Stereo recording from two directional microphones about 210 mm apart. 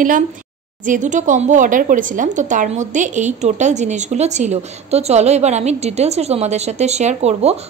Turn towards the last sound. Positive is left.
turn(degrees=-30)  # may be behind; listen again after turning